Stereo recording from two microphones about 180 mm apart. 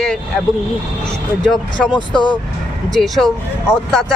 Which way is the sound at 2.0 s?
25° left (ahead or behind).